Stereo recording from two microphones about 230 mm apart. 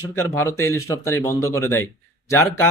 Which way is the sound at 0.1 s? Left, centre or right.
Centre.